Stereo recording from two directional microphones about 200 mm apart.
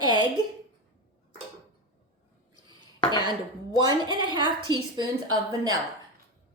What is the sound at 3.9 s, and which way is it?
Speech, 20° right (ahead or behind).